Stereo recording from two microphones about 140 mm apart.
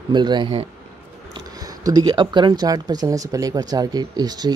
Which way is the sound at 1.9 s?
30° right (ahead or behind).